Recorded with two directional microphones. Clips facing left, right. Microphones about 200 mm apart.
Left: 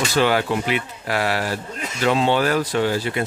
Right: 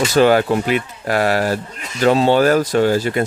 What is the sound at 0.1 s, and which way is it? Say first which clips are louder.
Speech: right 7 dB; 45° right (ahead or behind).